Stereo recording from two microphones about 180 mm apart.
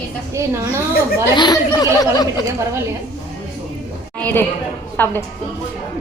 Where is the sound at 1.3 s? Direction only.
25° left (ahead or behind).